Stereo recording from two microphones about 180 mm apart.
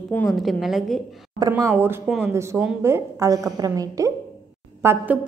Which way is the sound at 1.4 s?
15° right (ahead or behind).